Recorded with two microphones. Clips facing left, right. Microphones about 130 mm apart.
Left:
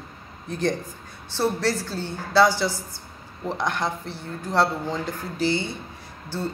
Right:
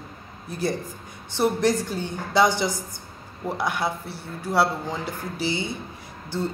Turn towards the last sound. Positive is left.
turn(degrees=-15)  # may be behind; listen again after turning